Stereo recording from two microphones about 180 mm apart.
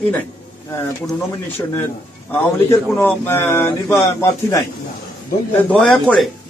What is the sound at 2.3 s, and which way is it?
A man's voice, 15° left (ahead or behind).